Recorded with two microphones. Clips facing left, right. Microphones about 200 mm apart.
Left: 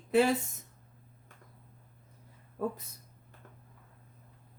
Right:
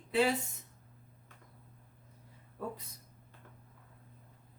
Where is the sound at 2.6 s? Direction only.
45° left (ahead or behind).